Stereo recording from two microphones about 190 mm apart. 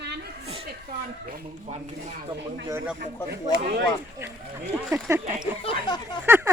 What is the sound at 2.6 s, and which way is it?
Speech, 15° right (ahead or behind).